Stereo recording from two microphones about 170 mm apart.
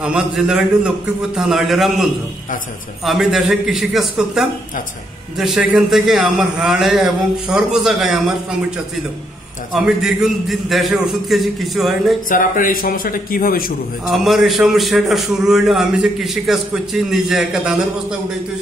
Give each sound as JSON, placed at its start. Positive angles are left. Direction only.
{"t": 0.0, "sound": "a man's voice", "side_deg": -5}
{"t": 3.1, "sound": "a man's voice", "side_deg": 0}
{"t": 12.3, "sound": "a man's voice", "side_deg": 55}
{"t": 14.0, "sound": "a man's voice", "side_deg": 0}